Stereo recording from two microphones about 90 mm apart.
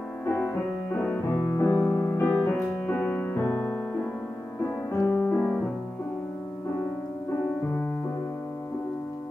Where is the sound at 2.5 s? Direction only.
15° left (ahead or behind).